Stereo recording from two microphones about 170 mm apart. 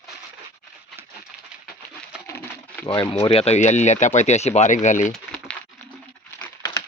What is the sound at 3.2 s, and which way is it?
Speech, 35° left (ahead or behind).